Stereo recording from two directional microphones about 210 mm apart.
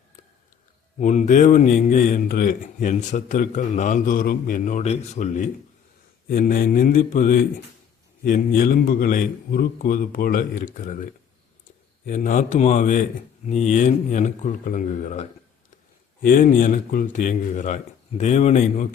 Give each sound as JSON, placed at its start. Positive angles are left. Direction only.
{"t": 0.9, "sound": "speech", "side_deg": 35}
{"t": 6.2, "sound": "mantra", "side_deg": 45}
{"t": 8.2, "sound": "speech", "side_deg": 40}
{"t": 12.0, "sound": "speech", "side_deg": 40}